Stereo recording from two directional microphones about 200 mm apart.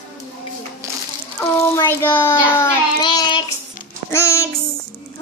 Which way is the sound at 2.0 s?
10° left (ahead or behind).